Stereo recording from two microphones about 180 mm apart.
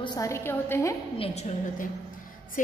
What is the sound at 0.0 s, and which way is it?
Speech, 20° left (ahead or behind).